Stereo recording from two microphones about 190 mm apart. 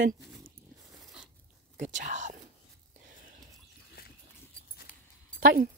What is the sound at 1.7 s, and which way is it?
Speech, 40° right (ahead or behind).